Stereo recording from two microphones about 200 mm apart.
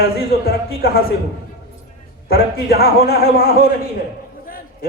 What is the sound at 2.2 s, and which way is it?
A man's voice, 50° left (ahead or behind).